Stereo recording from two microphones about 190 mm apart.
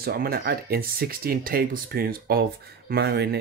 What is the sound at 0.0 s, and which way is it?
Speech, 55° right (ahead or behind).